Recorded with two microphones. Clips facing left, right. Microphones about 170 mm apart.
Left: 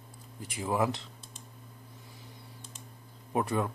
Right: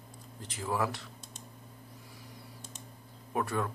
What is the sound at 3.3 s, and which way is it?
Speech, 20° left (ahead or behind).